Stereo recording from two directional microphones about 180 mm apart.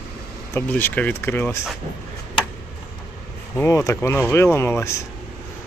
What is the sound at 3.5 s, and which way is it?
Speech, 10° left (ahead or behind).